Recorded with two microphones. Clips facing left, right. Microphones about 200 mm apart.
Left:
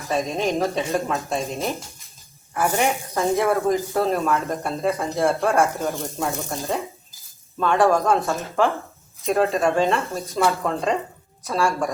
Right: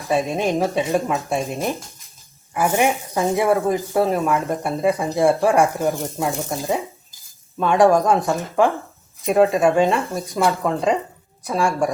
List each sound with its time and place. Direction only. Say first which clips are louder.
0.1 s speech: right 3 dB; 15° right (ahead or behind)